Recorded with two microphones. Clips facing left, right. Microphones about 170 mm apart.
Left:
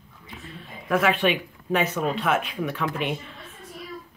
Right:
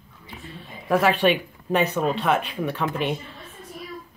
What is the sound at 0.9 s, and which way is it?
Speech, 35° right (ahead or behind).